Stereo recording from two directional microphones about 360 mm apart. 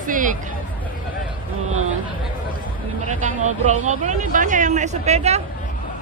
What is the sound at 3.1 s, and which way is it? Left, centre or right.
Speech, centre.